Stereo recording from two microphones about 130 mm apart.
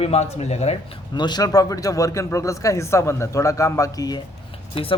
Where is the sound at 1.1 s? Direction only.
35° left (ahead or behind).